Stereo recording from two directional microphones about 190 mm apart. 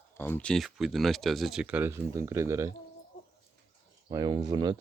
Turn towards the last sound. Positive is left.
turn(degrees=-20)  # may be behind; listen again after turning